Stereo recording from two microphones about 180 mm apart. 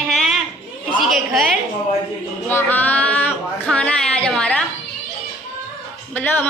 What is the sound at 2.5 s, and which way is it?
Speech, 10° left (ahead or behind).